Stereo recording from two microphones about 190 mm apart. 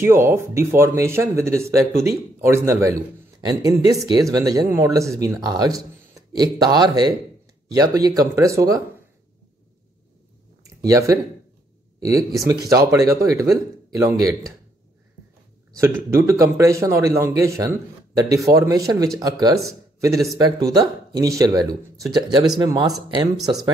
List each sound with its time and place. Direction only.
0.0 s speech: 15° right (ahead or behind)
10.6 s a sound: 15° right (ahead or behind)
12.0 s speech: 15° right (ahead or behind)
15.8 s speech: 15° right (ahead or behind)